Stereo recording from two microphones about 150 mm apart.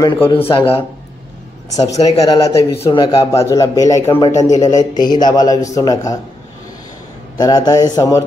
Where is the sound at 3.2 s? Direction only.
20° left (ahead or behind).